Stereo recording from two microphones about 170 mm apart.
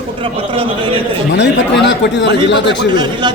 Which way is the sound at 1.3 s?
90° left.